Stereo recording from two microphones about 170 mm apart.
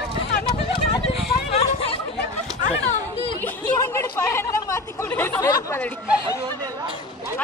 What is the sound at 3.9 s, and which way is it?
Chatter, 15° left (ahead or behind).